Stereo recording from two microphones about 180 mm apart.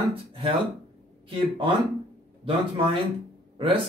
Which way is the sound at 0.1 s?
30° right (ahead or behind).